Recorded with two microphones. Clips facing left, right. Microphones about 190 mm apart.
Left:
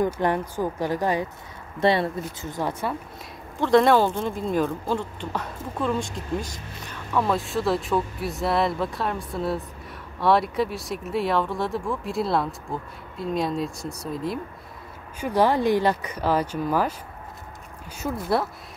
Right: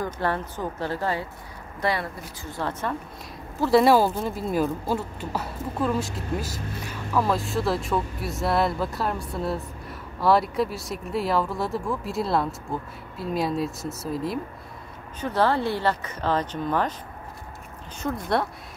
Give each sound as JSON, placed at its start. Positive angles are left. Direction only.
{"t": 0.0, "sound": "speech", "side_deg": 15}
{"t": 3.5, "sound": "speech", "side_deg": -5}
{"t": 15.1, "sound": "speech", "side_deg": 10}
{"t": 17.9, "sound": "speech", "side_deg": 5}